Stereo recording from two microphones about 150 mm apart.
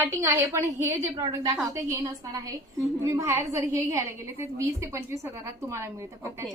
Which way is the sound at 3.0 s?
20° right (ahead or behind).